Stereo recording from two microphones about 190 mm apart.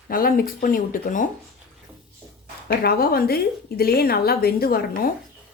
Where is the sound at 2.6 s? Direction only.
50° left (ahead or behind).